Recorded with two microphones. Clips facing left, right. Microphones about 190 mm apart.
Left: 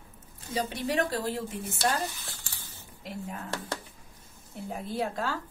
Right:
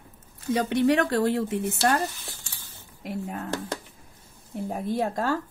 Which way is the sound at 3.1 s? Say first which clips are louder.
Right 6 dB; 55° right (ahead or behind).